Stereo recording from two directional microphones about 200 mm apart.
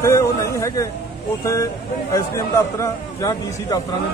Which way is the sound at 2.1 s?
15° left (ahead or behind).